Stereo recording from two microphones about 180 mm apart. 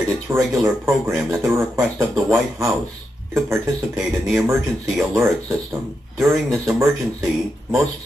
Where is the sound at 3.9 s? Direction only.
Centre (ahead or behind).